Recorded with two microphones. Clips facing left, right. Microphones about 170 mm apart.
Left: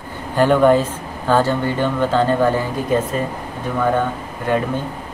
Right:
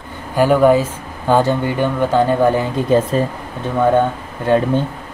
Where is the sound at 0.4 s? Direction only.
5° right (ahead or behind).